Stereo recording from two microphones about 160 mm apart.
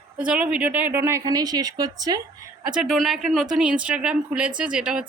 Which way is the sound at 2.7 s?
5° right (ahead or behind).